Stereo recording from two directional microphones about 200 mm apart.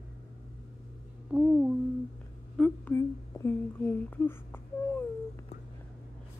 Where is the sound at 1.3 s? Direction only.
5° right (ahead or behind).